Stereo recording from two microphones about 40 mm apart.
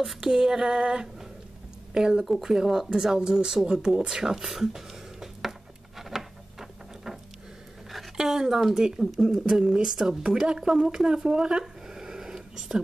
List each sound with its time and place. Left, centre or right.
0.3 s speech: centre
2.2 s speech: centre
3.2 s a sound: centre
8.2 s speech: centre
9.8 s speech: centre
10.2 s speech: centre
11.2 s a sound: centre